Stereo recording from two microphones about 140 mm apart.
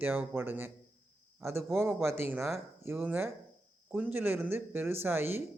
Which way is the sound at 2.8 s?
15° right (ahead or behind).